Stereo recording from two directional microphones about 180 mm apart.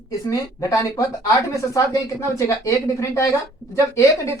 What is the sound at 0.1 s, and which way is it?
Speech, 20° left (ahead or behind).